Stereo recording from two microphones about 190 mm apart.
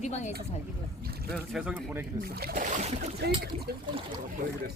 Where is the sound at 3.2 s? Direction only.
60° right (ahead or behind).